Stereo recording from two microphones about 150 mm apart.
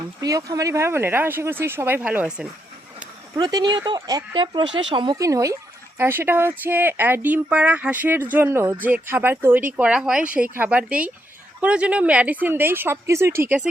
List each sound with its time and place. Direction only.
0.2 s speech: 25° right (ahead or behind); by 2.5 s 5° right (ahead or behind)
3.3 s speech: 30° right (ahead or behind)